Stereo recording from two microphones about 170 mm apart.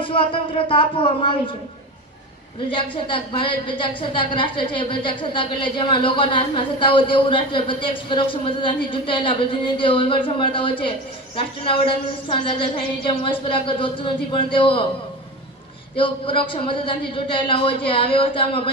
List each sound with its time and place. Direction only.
0.0 s music: 30° left (ahead or behind)
0.7 s a man's voice: 30° left (ahead or behind)
2.6 s a woman's voice: 30° left (ahead or behind)
16.0 s a man's voice: 30° left (ahead or behind)